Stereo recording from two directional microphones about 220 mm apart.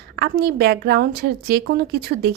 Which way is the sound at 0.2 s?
45° right (ahead or behind).